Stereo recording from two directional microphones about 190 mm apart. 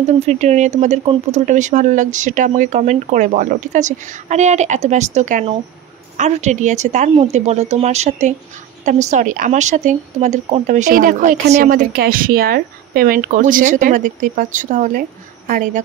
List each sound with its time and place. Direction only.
0.0 s a woman's voice: 35° right (ahead or behind)